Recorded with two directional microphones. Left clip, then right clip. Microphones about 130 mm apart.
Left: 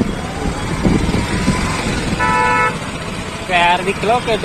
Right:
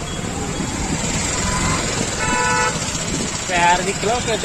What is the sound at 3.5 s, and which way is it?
Speech, 20° right (ahead or behind).